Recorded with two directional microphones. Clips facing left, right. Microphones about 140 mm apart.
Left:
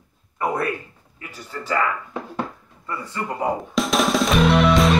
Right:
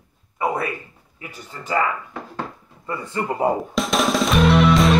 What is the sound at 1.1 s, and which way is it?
Speech, 15° right (ahead or behind).